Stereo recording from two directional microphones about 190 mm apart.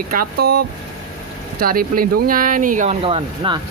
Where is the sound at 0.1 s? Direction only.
55° right (ahead or behind).